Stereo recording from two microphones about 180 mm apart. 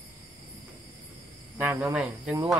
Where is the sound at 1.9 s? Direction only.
Centre (ahead or behind).